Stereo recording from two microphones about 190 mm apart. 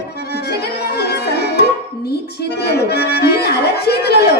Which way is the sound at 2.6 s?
60° left (ahead or behind).